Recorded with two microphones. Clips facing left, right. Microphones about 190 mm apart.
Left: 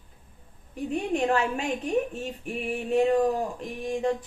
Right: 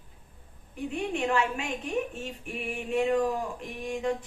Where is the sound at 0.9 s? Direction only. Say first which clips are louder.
Left 4 dB; 40° left (ahead or behind).